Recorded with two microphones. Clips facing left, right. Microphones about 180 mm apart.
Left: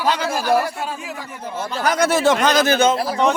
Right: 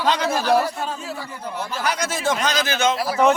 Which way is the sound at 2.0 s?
70° left (ahead or behind).